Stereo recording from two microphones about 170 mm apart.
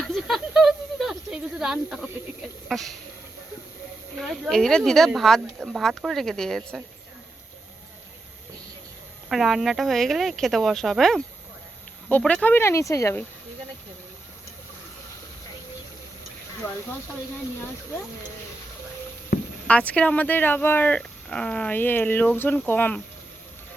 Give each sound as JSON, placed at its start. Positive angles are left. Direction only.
{"t": 0.0, "sound": "a sound", "side_deg": 0}
{"t": 2.6, "sound": "speech", "side_deg": 0}
{"t": 4.2, "sound": "speech", "side_deg": 0}
{"t": 9.3, "sound": "speech", "side_deg": 0}
{"t": 19.3, "sound": "a sound", "side_deg": 60}
{"t": 19.6, "sound": "speech", "side_deg": 10}